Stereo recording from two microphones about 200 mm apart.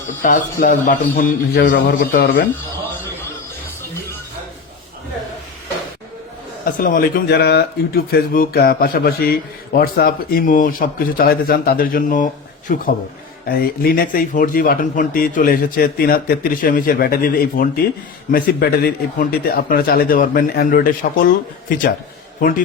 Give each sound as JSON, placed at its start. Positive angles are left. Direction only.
{"t": 0.2, "sound": "speech", "side_deg": 45}
{"t": 6.7, "sound": "speech", "side_deg": 45}
{"t": 22.4, "sound": "a man's voice", "side_deg": 45}